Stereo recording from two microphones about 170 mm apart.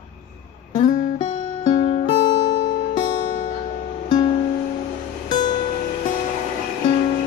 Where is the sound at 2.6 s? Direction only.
50° left (ahead or behind).